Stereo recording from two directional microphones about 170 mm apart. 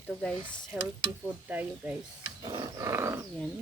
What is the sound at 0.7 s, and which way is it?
Speech, 5° right (ahead or behind).